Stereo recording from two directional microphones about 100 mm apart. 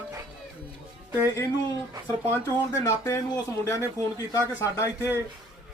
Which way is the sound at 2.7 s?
35° left (ahead or behind).